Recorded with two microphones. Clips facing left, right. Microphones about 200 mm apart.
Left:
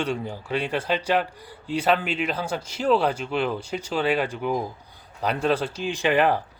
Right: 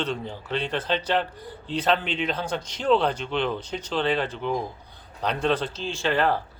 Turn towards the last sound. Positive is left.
turn(degrees=15)  # may be behind; listen again after turning